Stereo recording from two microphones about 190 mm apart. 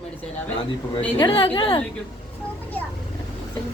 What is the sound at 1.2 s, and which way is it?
Speech, 30° left (ahead or behind).